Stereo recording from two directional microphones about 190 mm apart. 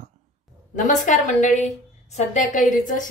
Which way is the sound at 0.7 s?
40° left (ahead or behind).